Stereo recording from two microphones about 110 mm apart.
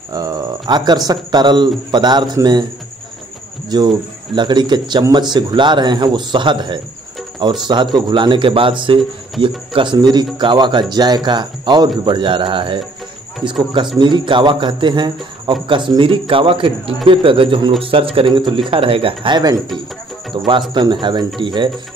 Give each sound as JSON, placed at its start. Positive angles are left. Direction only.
{"t": 0.1, "sound": "speech", "side_deg": -35}
{"t": 3.7, "sound": "speech", "side_deg": -40}